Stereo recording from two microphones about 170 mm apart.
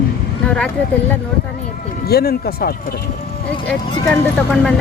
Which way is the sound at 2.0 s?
65° left (ahead or behind).